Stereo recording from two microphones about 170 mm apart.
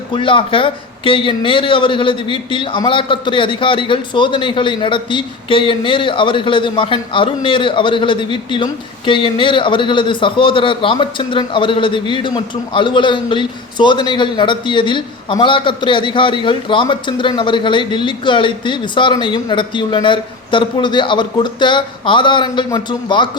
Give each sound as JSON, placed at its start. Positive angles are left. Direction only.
{"t": 0.1, "sound": "a man's voice", "side_deg": 30}